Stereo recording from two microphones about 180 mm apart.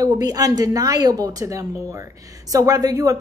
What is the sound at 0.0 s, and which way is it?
A woman's voice, 20° right (ahead or behind).